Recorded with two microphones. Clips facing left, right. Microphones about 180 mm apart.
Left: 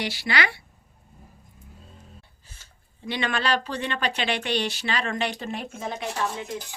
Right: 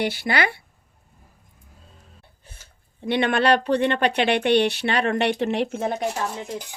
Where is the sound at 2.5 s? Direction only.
60° right (ahead or behind).